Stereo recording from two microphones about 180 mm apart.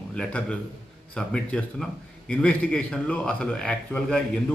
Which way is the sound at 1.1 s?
5° left (ahead or behind).